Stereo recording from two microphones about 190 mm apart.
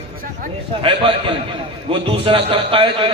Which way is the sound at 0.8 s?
25° right (ahead or behind).